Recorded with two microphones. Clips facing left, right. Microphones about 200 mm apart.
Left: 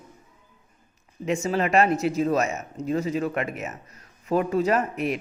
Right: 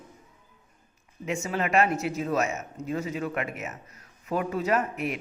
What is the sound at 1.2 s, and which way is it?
Speech, 35° left (ahead or behind).